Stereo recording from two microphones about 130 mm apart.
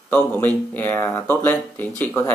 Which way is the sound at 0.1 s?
15° left (ahead or behind).